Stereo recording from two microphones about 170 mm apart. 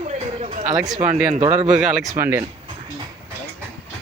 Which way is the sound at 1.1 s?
35° right (ahead or behind).